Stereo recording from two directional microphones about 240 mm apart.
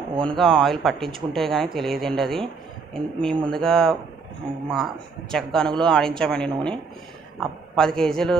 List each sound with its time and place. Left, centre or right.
0.1 s speech: centre
0.4 s speech: centre